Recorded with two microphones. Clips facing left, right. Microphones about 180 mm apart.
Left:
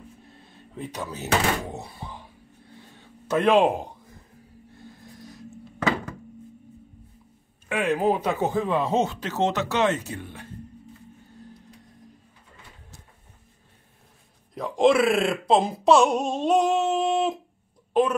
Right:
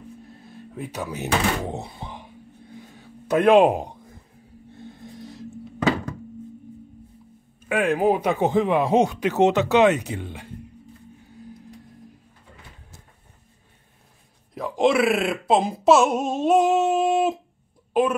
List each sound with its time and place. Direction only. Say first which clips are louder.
0.7 s speech: right 3 dB; 10° right (ahead or behind)
3.3 s speech: right 4 dB; 15° right (ahead or behind)
4.8 s music: right 5 dB; 25° right (ahead or behind)
7.6 s speech: right 3 dB; 10° right (ahead or behind)
14.5 s speech: left 1 dB; centre (ahead or behind)
16.9 s a sound: right 3 dB; 5° right (ahead or behind)